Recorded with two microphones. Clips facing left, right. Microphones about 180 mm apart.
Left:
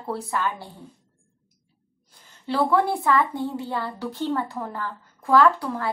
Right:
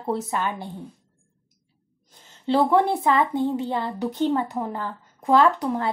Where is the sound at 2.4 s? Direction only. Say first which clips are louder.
Right 3 dB; 20° right (ahead or behind).